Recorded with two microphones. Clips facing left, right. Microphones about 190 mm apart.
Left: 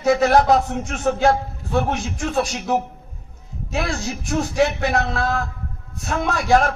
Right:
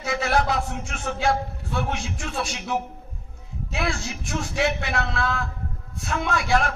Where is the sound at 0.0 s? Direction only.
40° left (ahead or behind).